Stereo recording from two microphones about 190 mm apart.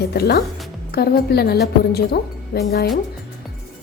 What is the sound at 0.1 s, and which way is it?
A woman's voice, 55° left (ahead or behind).